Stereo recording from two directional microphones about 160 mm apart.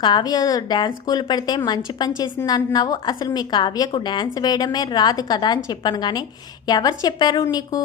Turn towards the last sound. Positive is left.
turn(degrees=25)  # may be behind; listen again after turning